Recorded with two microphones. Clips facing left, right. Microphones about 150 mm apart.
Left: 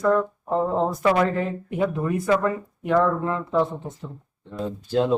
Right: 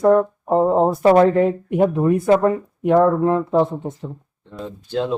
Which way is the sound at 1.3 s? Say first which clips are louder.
Right 9 dB; 55° right (ahead or behind).